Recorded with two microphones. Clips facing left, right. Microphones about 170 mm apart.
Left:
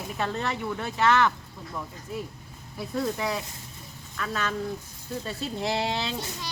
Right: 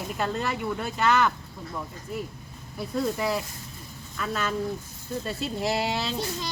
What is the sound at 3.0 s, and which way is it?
Speech, 5° right (ahead or behind).